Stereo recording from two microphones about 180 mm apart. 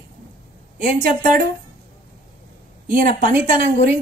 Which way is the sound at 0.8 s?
50° right (ahead or behind).